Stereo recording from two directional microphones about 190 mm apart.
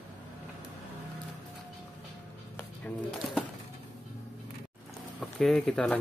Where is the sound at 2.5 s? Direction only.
10° left (ahead or behind).